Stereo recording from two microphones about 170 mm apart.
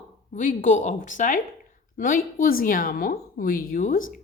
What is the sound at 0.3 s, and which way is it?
A woman's voice, 50° left (ahead or behind).